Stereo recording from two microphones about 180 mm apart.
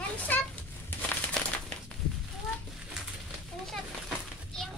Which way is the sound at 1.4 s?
5° left (ahead or behind).